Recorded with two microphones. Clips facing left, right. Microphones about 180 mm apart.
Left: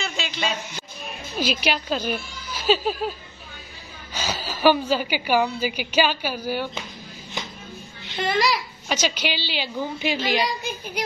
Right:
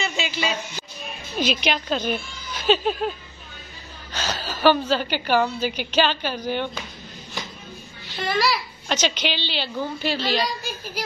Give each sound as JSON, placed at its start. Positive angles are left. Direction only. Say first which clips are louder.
{"t": 0.0, "sound": "a sound", "louder": "right 2 dB", "side_deg": -5}
{"t": 1.4, "sound": "a woman's voice", "louder": "right 1 dB", "side_deg": 5}
{"t": 8.1, "sound": "a woman's voice", "louder": "left 1 dB", "side_deg": 20}